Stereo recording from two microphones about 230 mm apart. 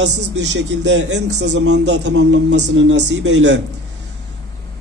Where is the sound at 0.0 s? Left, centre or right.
Right.